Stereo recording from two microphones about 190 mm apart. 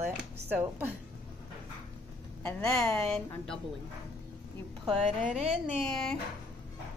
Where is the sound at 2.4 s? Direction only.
5° left (ahead or behind).